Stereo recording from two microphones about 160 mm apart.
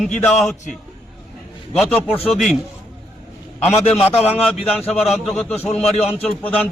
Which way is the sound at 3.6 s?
40° left (ahead or behind).